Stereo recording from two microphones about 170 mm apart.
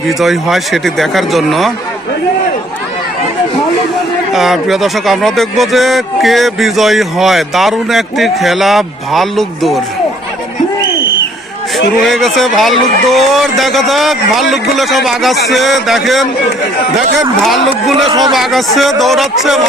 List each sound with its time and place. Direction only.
0.2 s speech: centre (ahead or behind)
4.3 s speech: centre (ahead or behind)
12.0 s speech: centre (ahead or behind)
17.4 s speech: centre (ahead or behind)
18.1 s speech: 25° right (ahead or behind)
18.3 s speech: centre (ahead or behind)